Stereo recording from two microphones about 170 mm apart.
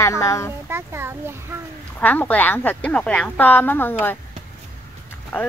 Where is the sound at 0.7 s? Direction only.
15° right (ahead or behind).